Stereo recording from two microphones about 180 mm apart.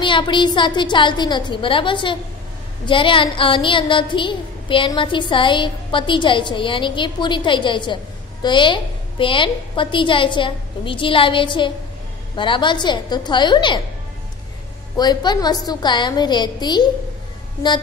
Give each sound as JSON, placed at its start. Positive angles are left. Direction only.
{"t": 0.0, "sound": "a woman's voice", "side_deg": 25}
{"t": 15.0, "sound": "a woman's voice", "side_deg": 25}